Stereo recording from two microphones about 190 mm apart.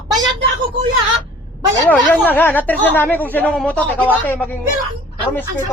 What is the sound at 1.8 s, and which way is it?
Speech, 10° left (ahead or behind).